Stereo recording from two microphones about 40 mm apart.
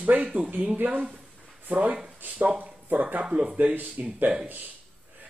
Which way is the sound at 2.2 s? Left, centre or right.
Right.